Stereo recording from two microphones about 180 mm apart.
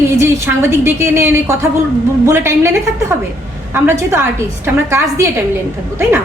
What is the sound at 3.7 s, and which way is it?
A woman's voice, 10° right (ahead or behind).